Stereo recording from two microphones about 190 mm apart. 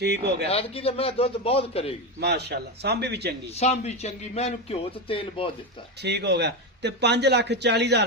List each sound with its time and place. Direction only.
0.0 s speech: 60° right (ahead or behind)
0.4 s speech: 30° left (ahead or behind)
2.2 s speech: 60° right (ahead or behind)
3.5 s speech: 35° left (ahead or behind)
6.0 s speech: 60° right (ahead or behind)